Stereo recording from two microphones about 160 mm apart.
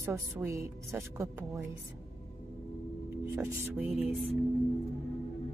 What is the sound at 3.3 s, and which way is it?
Speech, 10° right (ahead or behind).